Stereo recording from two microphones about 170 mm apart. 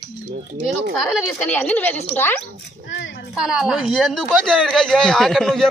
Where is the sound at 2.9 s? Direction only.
90° left.